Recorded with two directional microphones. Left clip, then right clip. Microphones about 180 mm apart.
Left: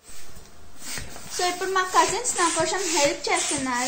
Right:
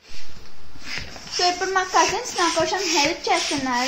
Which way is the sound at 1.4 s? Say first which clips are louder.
Right 3 dB; 30° right (ahead or behind).